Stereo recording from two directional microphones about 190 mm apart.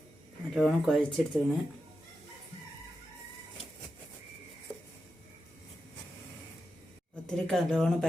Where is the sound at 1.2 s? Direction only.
Centre (ahead or behind).